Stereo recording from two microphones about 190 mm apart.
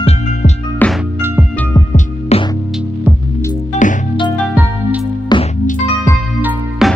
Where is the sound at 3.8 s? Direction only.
40° left (ahead or behind).